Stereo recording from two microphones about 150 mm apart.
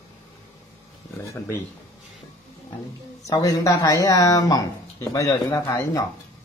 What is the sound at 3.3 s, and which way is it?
Speech, 25° left (ahead or behind).